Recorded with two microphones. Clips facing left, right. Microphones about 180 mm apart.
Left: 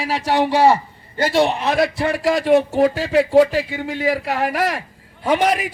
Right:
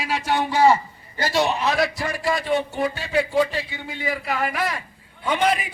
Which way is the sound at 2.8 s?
90° left.